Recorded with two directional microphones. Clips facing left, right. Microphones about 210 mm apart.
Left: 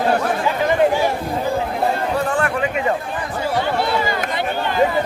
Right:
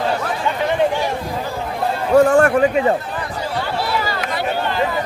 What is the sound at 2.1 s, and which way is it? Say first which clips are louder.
Chatter: right 8 dB; 45° right (ahead or behind).